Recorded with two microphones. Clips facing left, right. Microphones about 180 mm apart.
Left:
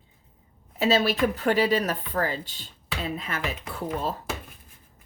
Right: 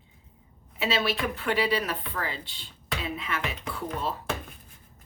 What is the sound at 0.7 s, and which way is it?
Speech, 40° left (ahead or behind).